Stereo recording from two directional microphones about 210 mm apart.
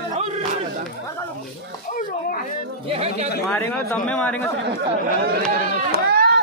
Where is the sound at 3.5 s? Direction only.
10° left (ahead or behind).